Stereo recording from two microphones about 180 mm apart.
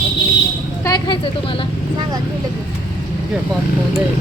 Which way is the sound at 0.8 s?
25° left (ahead or behind).